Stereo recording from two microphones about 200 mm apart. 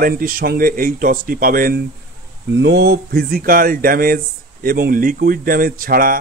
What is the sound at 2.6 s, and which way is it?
Speech, 60° right (ahead or behind).